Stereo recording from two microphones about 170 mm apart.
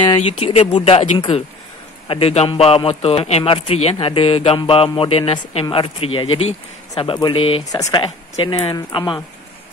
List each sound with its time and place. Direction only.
0.0 s a man's voice: 30° left (ahead or behind)